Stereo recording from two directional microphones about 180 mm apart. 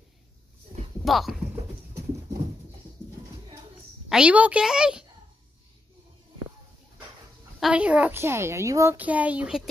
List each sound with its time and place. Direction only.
1.0 s clip-clop: centre (ahead or behind)
4.1 s a woman's voice: 5° right (ahead or behind)
7.6 s a woman's voice: 5° right (ahead or behind)